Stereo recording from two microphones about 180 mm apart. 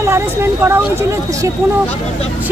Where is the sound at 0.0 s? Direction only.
15° right (ahead or behind).